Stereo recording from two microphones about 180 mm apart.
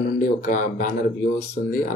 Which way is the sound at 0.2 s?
45° left (ahead or behind).